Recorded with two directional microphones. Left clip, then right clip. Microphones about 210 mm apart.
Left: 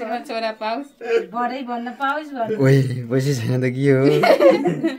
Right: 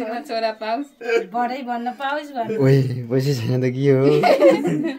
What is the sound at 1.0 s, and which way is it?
A woman's voice, 50° right (ahead or behind).